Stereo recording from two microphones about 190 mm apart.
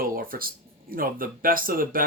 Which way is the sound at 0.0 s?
50° right (ahead or behind).